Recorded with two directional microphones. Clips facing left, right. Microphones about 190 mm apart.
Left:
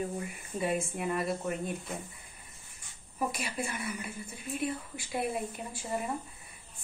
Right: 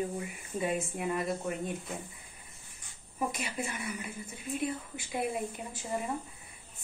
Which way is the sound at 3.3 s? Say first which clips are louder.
Left 1 dB; 20° right (ahead or behind).